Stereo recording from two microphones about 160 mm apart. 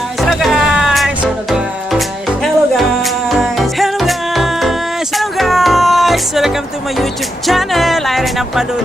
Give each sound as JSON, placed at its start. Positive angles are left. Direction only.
{"t": 0.2, "sound": "music", "side_deg": 0}